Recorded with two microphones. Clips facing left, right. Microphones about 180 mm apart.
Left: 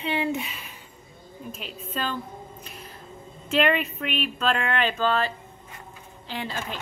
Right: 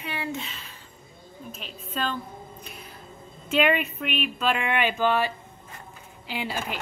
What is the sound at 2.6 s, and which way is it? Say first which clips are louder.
Music: left 1 dB; centre (ahead or behind).